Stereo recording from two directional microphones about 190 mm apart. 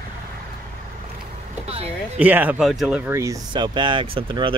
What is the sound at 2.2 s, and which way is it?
Speech, 10° right (ahead or behind).